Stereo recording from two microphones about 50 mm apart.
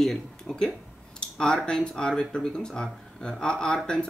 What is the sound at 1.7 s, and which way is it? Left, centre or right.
Speech, centre.